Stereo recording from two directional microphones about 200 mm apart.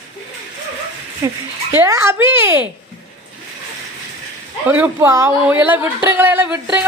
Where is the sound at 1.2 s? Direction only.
15° right (ahead or behind).